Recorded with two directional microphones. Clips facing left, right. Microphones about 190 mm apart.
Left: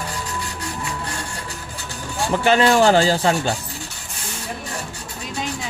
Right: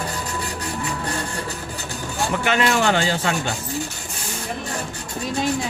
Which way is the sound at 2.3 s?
30° left (ahead or behind).